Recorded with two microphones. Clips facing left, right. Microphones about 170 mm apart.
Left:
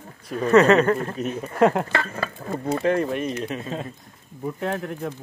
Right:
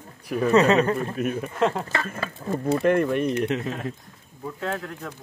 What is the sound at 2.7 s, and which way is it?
Speech, 60° right (ahead or behind).